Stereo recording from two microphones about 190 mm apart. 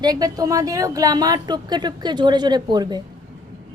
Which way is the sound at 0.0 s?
20° right (ahead or behind).